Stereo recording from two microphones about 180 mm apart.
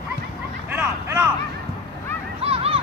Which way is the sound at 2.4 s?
35° right (ahead or behind).